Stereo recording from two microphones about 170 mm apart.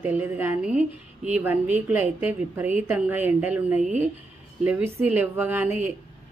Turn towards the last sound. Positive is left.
turn(degrees=-10)  # may be behind; listen again after turning